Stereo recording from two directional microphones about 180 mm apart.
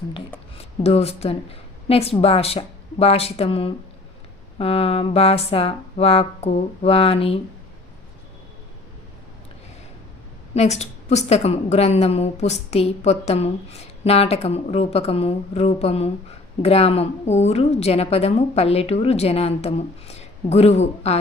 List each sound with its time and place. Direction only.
0.5 s a woman's voice: 35° left (ahead or behind)
10.5 s a woman's voice: 35° left (ahead or behind)